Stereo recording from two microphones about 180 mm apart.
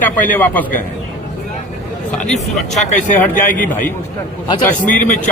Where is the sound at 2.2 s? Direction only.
40° left (ahead or behind).